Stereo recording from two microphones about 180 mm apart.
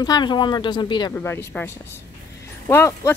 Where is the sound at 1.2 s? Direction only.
10° left (ahead or behind).